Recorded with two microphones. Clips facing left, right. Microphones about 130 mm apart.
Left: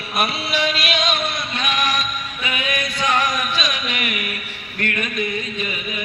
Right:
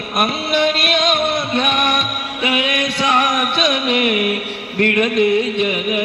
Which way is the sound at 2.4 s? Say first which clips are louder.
Right 7 dB; 70° right (ahead or behind).